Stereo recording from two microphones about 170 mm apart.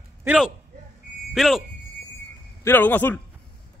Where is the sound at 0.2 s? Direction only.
10° right (ahead or behind).